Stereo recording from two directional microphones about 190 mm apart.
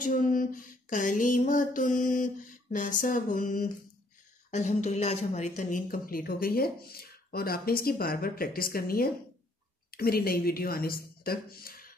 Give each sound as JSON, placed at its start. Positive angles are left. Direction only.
{"t": 0.0, "sound": "a woman's voice", "side_deg": 45}